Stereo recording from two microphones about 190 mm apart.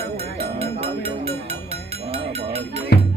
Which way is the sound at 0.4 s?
30° right (ahead or behind).